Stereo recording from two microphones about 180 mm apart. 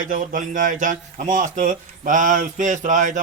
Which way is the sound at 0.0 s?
50° right (ahead or behind).